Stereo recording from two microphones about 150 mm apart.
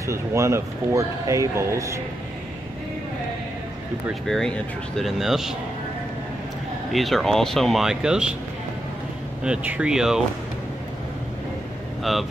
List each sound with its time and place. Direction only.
0.0 s speech: 20° right (ahead or behind)
4.1 s speech: centre (ahead or behind)
6.9 s speech: centre (ahead or behind)
9.4 s speech: 10° right (ahead or behind)
12.0 s speech: centre (ahead or behind)